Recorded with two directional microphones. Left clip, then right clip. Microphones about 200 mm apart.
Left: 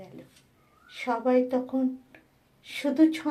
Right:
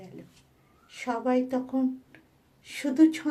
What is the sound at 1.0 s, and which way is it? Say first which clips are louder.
Speech: left 3 dB; 15° right (ahead or behind).